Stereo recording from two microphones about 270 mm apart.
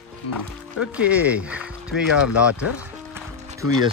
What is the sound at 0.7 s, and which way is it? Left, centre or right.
Speech, centre.